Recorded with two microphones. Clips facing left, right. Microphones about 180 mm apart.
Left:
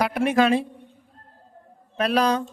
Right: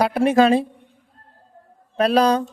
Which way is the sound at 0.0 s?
30° right (ahead or behind).